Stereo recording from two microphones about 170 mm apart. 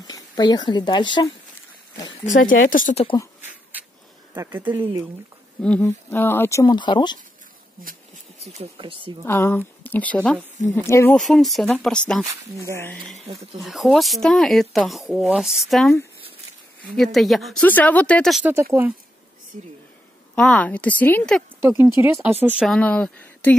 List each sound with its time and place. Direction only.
0.0 s speech: 25° left (ahead or behind)
2.2 s speech: 50° left (ahead or behind)
4.5 s speech: 10° right (ahead or behind)
4.7 s speech: 25° right (ahead or behind)
5.6 s speech: 5° left (ahead or behind); by 7.2 s 25° left (ahead or behind)
8.4 s speech: 40° right (ahead or behind)
9.2 s speech: 15° left (ahead or behind)
11.1 s speech: centre (ahead or behind)
13.3 s speech: 35° right (ahead or behind)
13.6 s speech: centre (ahead or behind)
18.4 s speech: 15° right (ahead or behind)
20.3 s speech: 5° left (ahead or behind)
21.5 s speech: 15° right (ahead or behind)
22.7 s speech: 10° left (ahead or behind)